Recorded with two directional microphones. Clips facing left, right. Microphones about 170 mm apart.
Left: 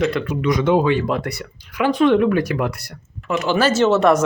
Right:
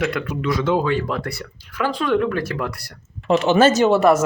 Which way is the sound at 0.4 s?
20° left (ahead or behind).